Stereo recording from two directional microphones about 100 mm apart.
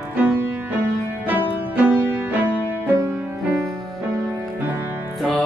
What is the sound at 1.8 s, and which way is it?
Music, 15° right (ahead or behind).